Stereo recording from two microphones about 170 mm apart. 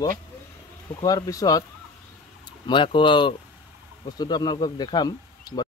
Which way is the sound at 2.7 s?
30° left (ahead or behind).